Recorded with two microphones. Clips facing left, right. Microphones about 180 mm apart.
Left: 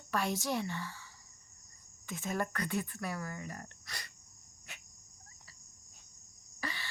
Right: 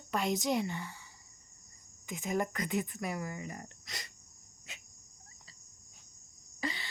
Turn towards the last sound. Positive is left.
turn(degrees=-20)  # may be behind; listen again after turning